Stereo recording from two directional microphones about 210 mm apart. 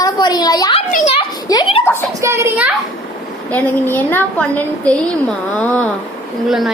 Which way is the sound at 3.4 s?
5° left (ahead or behind).